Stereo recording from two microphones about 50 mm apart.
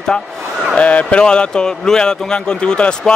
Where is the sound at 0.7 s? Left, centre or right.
Left.